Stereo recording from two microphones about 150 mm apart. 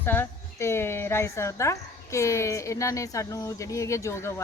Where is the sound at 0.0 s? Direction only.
15° left (ahead or behind).